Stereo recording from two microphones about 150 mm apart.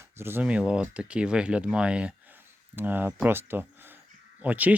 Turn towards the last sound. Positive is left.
turn(degrees=-10)  # may be behind; listen again after turning